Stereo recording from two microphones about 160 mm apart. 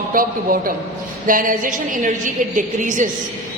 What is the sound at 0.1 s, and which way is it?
A woman's voice, 60° right (ahead or behind).